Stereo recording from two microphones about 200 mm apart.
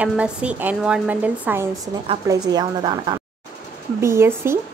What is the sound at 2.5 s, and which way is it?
Speech, 20° right (ahead or behind).